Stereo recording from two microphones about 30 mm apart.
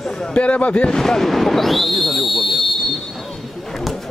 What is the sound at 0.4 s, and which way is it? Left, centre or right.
Speech, left.